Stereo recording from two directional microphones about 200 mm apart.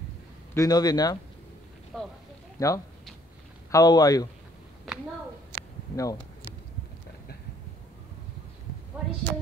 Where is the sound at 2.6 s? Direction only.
15° left (ahead or behind).